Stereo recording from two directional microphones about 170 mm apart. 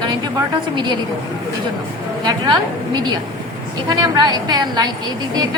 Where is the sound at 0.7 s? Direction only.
25° right (ahead or behind).